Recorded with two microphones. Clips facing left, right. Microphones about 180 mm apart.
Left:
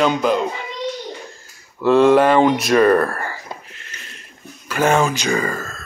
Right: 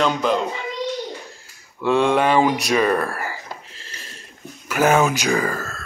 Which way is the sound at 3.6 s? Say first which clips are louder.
Even; 30° right (ahead or behind).